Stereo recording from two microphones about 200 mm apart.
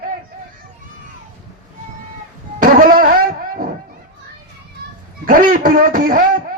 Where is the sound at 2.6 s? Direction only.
45° right (ahead or behind).